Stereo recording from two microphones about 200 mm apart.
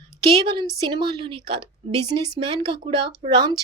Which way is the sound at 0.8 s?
25° right (ahead or behind).